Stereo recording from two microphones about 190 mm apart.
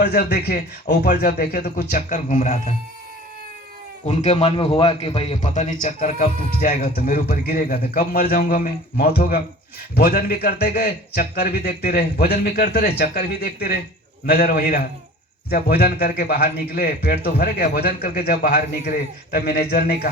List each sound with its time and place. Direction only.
0.0 s a man's voice: 55° left (ahead or behind); by 2.7 s 35° left (ahead or behind)
4.0 s a man's voice: 35° left (ahead or behind); by 20.1 s 55° left (ahead or behind)